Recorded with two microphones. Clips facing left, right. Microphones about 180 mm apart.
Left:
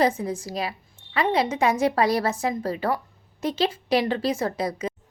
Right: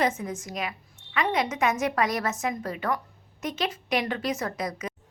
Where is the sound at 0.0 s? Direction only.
35° left (ahead or behind).